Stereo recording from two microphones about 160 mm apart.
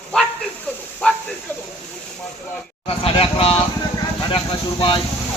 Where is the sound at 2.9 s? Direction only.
35° left (ahead or behind).